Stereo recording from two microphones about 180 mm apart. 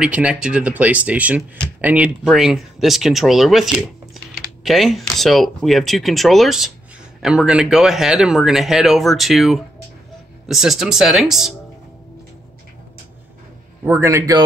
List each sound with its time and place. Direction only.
0.0 s speech: 5° right (ahead or behind)
13.8 s speech: 15° right (ahead or behind)